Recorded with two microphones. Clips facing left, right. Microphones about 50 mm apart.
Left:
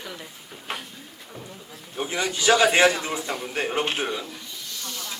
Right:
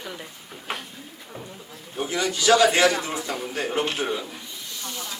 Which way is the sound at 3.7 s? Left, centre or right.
Left.